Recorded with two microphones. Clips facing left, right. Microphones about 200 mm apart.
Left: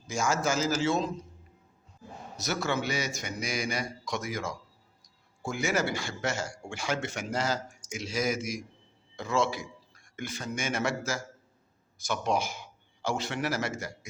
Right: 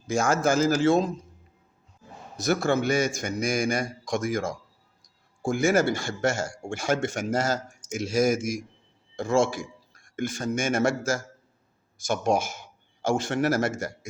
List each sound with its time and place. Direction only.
0.1 s a man's voice: 55° right (ahead or behind)
2.3 s a man's voice: 50° right (ahead or behind)